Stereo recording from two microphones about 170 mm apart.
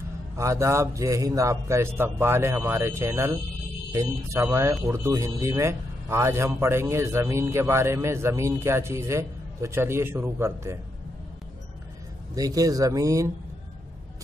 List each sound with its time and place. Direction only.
0.4 s a man's voice: 15° right (ahead or behind)
12.4 s speech: 20° right (ahead or behind)